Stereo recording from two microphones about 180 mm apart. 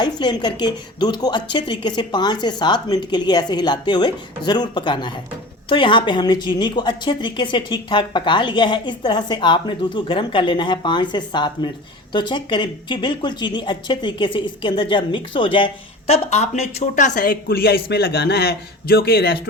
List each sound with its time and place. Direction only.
0.0 s a woman's voice: 25° left (ahead or behind); by 19.4 s 60° left (ahead or behind)